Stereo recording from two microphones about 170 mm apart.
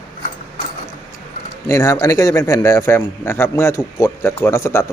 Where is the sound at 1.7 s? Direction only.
20° left (ahead or behind).